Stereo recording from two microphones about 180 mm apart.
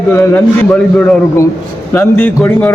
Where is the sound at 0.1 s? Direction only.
10° left (ahead or behind).